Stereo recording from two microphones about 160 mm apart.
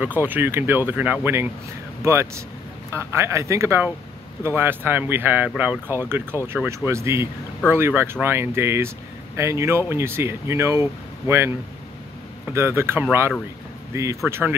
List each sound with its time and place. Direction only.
0.0 s speech: 10° right (ahead or behind)
12.5 s speech: 15° right (ahead or behind)